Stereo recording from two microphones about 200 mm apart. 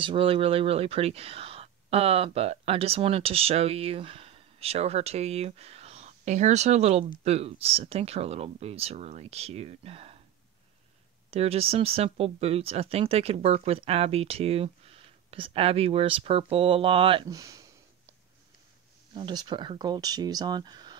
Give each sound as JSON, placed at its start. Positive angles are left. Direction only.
{"t": 0.0, "sound": "speech", "side_deg": -25}
{"t": 11.2, "sound": "speech", "side_deg": -30}
{"t": 19.1, "sound": "speech", "side_deg": -20}